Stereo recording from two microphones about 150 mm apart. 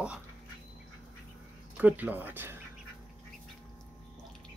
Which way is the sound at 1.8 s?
10° right (ahead or behind).